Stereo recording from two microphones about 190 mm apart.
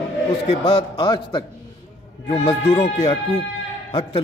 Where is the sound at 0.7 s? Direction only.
30° left (ahead or behind).